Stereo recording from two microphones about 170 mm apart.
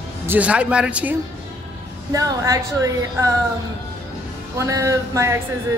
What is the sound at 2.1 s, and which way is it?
A woman's voice, 20° right (ahead or behind).